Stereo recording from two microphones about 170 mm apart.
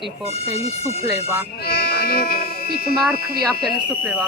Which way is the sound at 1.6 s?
65° left (ahead or behind).